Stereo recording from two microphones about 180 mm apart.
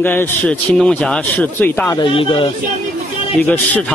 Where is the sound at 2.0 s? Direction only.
30° left (ahead or behind).